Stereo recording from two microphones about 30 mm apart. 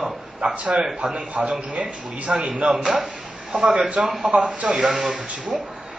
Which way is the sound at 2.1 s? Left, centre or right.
Right.